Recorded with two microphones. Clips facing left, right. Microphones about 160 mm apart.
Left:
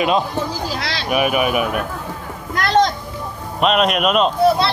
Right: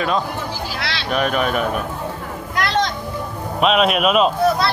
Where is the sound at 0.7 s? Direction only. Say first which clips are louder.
Left 2 dB; 40° left (ahead or behind).